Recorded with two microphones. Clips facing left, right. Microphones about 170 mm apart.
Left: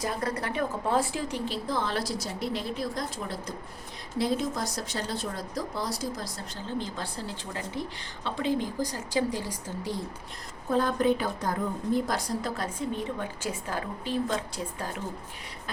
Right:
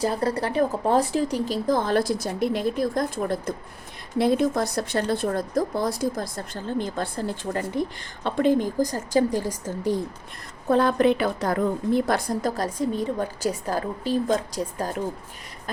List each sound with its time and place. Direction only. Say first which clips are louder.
0.0 s speech: right 7 dB; 30° right (ahead or behind)
10.7 s a woman's voice: right 5 dB; 70° right (ahead or behind)
12.4 s a woman's voice: right 7 dB; 40° right (ahead or behind)